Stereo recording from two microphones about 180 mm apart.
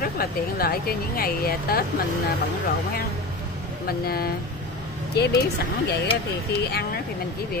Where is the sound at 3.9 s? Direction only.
60° left (ahead or behind).